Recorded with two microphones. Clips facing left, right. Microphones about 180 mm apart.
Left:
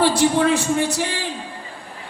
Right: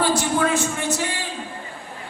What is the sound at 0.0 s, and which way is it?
Speech, 30° left (ahead or behind).